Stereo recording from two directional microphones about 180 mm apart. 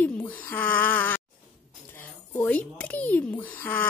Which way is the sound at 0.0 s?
10° left (ahead or behind).